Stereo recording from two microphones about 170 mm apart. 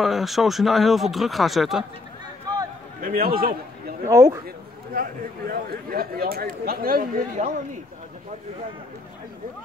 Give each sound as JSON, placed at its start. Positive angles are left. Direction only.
{"t": 0.0, "sound": "speech", "side_deg": 0}
{"t": 3.0, "sound": "a man's voice", "side_deg": -60}
{"t": 4.1, "sound": "speech", "side_deg": -20}
{"t": 4.9, "sound": "a man's voice", "side_deg": -60}